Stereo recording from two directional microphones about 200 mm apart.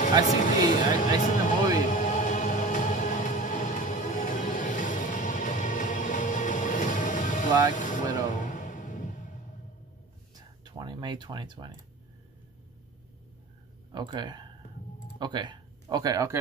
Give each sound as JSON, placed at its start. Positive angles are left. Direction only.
{"t": 0.3, "sound": "speech", "side_deg": 40}
{"t": 1.8, "sound": "music", "side_deg": 40}
{"t": 10.6, "sound": "a sound", "side_deg": -20}
{"t": 13.9, "sound": "speech", "side_deg": -20}